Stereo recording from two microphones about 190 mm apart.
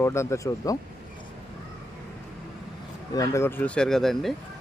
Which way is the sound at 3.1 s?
15° left (ahead or behind).